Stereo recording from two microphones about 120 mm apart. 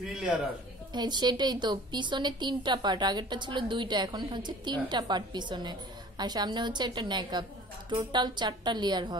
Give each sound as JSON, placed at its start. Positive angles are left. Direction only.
{"t": 0.0, "sound": "a man's voice", "side_deg": -5}
{"t": 0.9, "sound": "a woman's voice", "side_deg": -35}